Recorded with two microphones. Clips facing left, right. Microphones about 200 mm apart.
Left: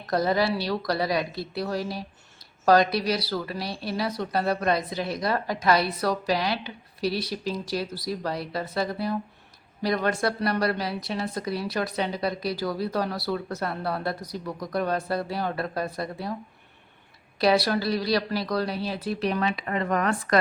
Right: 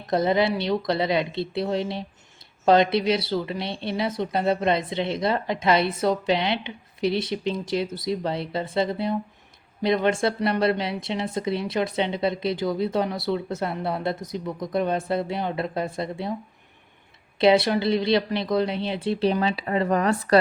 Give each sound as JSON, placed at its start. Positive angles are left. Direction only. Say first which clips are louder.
{"t": 0.0, "sound": "speech", "louder": "right 2 dB", "side_deg": -20}
{"t": 17.3, "sound": "speech", "louder": "right 4 dB", "side_deg": -25}